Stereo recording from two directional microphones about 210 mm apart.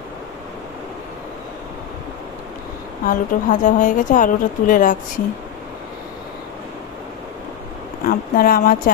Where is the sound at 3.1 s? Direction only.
40° left (ahead or behind).